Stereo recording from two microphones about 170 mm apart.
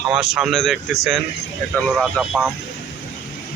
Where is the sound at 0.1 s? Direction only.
5° right (ahead or behind).